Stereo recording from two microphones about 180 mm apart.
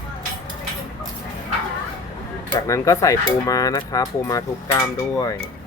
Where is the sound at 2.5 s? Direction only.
15° left (ahead or behind).